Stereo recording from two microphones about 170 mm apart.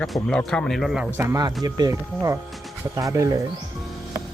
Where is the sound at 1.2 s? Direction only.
20° right (ahead or behind).